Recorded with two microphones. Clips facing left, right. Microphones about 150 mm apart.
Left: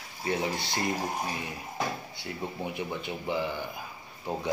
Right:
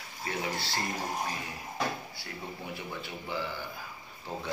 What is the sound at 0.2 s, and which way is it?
Speech, 15° left (ahead or behind).